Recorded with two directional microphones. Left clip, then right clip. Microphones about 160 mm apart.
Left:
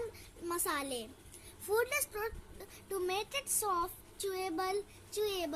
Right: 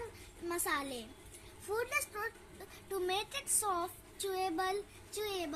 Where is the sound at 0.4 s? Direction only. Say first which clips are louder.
Even; 20° left (ahead or behind).